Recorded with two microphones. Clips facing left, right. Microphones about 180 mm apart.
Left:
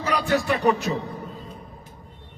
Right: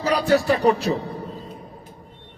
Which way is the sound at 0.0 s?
35° right (ahead or behind).